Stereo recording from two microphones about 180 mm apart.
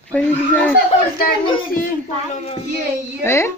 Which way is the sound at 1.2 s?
55° left (ahead or behind).